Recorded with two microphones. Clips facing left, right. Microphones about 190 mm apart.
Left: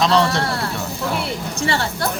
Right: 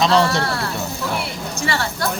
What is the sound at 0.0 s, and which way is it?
Speech, centre (ahead or behind).